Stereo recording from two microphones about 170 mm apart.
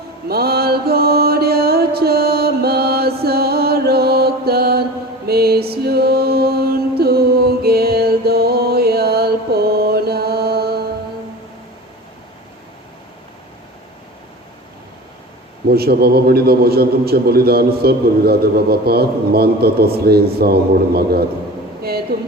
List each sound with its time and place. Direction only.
0.3 s music: 65° right (ahead or behind)
5.8 s mantra: 70° right (ahead or behind)
15.7 s a man's voice: 65° right (ahead or behind)
21.8 s a sound: 65° right (ahead or behind)